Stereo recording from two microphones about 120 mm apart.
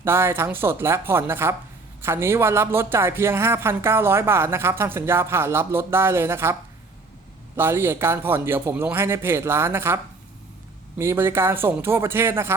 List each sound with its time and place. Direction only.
0.0 s speech: 20° right (ahead or behind)